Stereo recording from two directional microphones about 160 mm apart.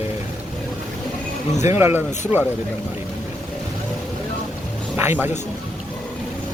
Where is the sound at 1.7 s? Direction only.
15° right (ahead or behind).